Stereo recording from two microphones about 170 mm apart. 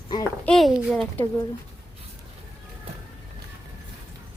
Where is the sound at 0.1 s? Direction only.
25° left (ahead or behind).